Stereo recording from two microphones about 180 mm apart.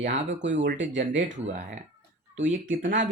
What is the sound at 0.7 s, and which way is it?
Speech, 90° right.